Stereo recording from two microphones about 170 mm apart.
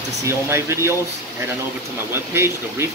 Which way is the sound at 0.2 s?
15° right (ahead or behind).